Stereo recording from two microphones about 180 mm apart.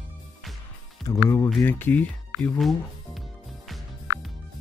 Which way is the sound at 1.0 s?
10° left (ahead or behind).